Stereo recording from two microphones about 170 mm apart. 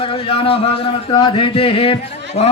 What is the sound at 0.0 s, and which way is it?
A man's voice, 30° left (ahead or behind).